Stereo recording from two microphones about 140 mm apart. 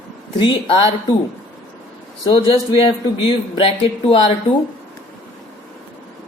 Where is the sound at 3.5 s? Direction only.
40° left (ahead or behind).